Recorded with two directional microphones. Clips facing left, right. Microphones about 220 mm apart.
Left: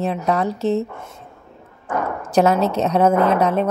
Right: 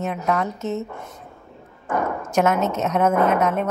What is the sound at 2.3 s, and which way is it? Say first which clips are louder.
A woman's voice: left 4 dB; 35° left (ahead or behind).